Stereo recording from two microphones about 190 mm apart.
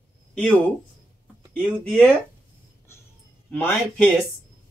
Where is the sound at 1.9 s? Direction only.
5° left (ahead or behind).